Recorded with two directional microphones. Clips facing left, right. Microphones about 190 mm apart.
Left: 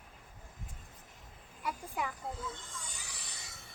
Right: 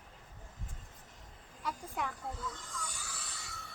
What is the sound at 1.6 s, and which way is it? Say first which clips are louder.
Speech: left 1 dB; 10° left (ahead or behind).